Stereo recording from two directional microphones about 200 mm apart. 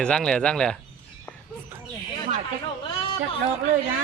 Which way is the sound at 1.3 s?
5° left (ahead or behind).